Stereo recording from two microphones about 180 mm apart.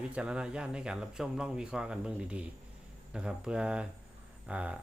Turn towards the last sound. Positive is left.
turn(degrees=-5)  # may be behind; listen again after turning